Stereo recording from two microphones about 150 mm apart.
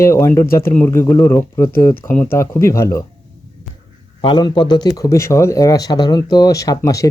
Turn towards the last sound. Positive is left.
turn(degrees=20)  # may be behind; listen again after turning